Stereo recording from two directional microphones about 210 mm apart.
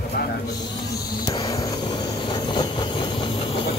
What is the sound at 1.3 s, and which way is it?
Vehicle, 15° left (ahead or behind).